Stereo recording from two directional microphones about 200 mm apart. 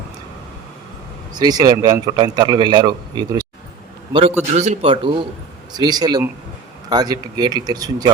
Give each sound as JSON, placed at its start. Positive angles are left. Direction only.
{"t": 1.4, "sound": "a man's voice", "side_deg": -20}
{"t": 4.5, "sound": "a man's voice", "side_deg": -35}